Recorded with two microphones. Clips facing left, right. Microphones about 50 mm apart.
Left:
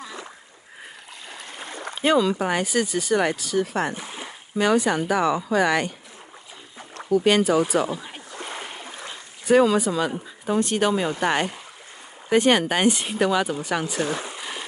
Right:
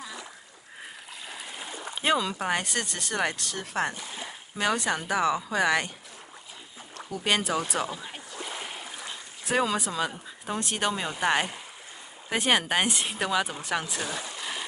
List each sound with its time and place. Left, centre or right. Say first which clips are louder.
1.3 s boat: left 2 dB; centre
1.6 s rowboat: left 6 dB; left
2.0 s speech: left 6 dB; centre
3.9 s speech: left 5 dB; left
4.3 s speech: left 7 dB; centre
7.1 s speech: left 9 dB; centre
8.6 s stream: left 2 dB; centre
9.0 s dog: left 6 dB; centre
10.4 s speech: left 7 dB; centre
14.0 s speech: left 7 dB; left
14.4 s a sound: left 1 dB; centre